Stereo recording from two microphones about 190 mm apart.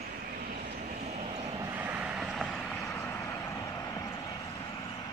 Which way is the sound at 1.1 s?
35° right (ahead or behind).